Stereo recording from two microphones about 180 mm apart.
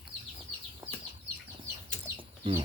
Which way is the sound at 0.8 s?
20° right (ahead or behind).